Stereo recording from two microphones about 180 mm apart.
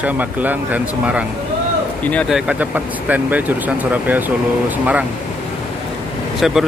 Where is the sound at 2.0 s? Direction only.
Centre (ahead or behind).